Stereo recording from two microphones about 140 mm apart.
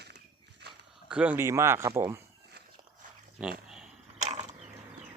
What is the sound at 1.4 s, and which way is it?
Speech, 20° right (ahead or behind).